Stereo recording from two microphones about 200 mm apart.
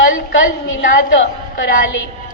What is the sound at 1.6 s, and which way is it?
Speech, 45° left (ahead or behind).